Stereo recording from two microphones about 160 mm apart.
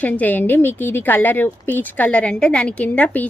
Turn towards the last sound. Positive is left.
turn(degrees=10)  # may be behind; listen again after turning